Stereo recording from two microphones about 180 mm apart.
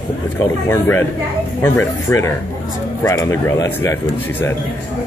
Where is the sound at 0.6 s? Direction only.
10° left (ahead or behind).